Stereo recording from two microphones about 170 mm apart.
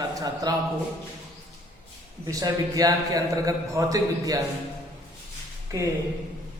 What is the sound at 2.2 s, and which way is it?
A man's voice, 20° right (ahead or behind).